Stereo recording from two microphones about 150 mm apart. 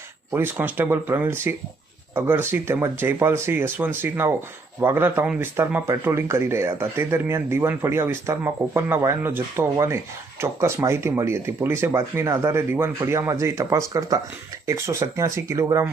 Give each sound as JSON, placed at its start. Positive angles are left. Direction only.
{"t": 0.3, "sound": "speech", "side_deg": -15}